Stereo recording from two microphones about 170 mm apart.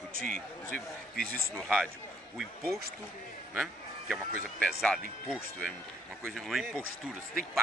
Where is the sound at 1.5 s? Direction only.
Centre (ahead or behind).